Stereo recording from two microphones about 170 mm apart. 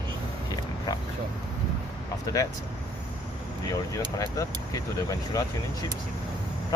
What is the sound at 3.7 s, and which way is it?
Speech, 20° left (ahead or behind).